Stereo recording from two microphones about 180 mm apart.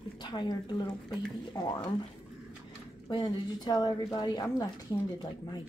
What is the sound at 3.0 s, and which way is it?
A woman's voice, 25° left (ahead or behind).